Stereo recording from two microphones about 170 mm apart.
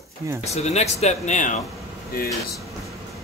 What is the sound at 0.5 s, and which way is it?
Speech, 40° left (ahead or behind).